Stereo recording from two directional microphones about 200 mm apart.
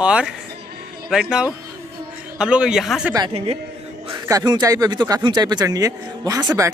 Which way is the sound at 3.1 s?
20° right (ahead or behind).